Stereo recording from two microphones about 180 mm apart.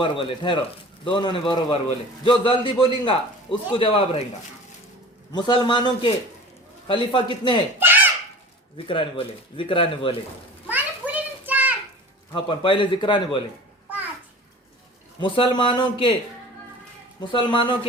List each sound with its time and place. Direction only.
0.0 s speech: 25° left (ahead or behind)
5.3 s speech: 25° left (ahead or behind)
7.8 s a sound: 10° right (ahead or behind)
8.9 s speech: 30° left (ahead or behind)
10.7 s children playing: 10° right (ahead or behind)
12.3 s speech: 30° left (ahead or behind)
15.2 s speech: 30° left (ahead or behind)
17.2 s speech: 25° left (ahead or behind)